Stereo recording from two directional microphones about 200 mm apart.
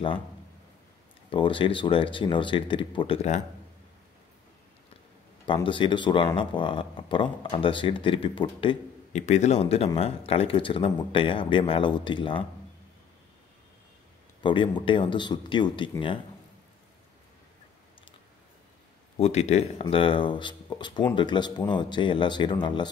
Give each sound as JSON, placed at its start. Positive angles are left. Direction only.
{"t": 1.3, "sound": "speech", "side_deg": 25}
{"t": 5.5, "sound": "speech", "side_deg": 25}
{"t": 14.4, "sound": "speech", "side_deg": 25}
{"t": 19.1, "sound": "speech", "side_deg": 30}